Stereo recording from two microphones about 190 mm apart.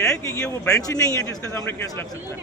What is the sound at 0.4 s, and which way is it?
A man's voice, 10° left (ahead or behind).